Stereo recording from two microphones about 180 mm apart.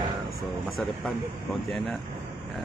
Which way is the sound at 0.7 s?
Centre (ahead or behind).